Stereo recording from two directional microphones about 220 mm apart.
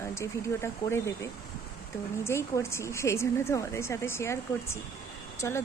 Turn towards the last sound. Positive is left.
turn(degrees=10)  # may be behind; listen again after turning